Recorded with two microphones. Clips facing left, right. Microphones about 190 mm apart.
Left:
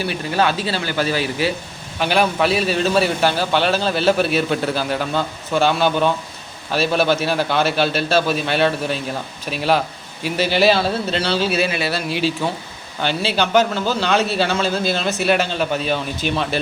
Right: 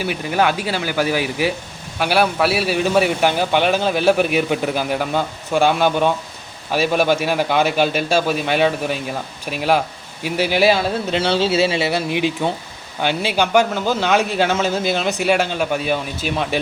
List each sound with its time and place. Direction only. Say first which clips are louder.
0.0 s a man's voice: right 1 dB; 15° right (ahead or behind)